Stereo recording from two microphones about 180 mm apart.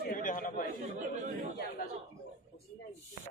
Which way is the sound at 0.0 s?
50° left (ahead or behind).